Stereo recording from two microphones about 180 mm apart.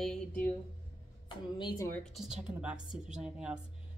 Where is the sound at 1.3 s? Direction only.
25° left (ahead or behind).